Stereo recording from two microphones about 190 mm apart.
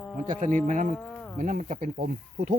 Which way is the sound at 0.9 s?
10° left (ahead or behind).